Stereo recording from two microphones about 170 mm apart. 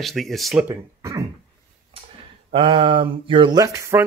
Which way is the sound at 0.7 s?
15° right (ahead or behind).